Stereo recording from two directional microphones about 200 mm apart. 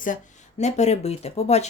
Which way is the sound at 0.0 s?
40° left (ahead or behind).